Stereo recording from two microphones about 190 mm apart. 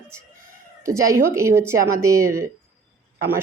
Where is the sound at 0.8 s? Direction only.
15° right (ahead or behind).